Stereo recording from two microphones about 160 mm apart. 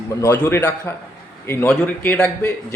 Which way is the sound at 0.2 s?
15° left (ahead or behind).